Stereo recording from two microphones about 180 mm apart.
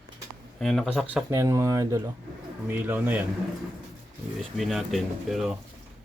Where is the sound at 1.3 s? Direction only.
15° right (ahead or behind).